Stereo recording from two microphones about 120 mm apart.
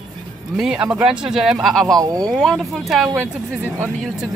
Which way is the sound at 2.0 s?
30° right (ahead or behind).